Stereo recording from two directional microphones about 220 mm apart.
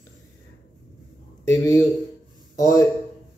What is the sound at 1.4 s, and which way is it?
A man's voice, 15° left (ahead or behind).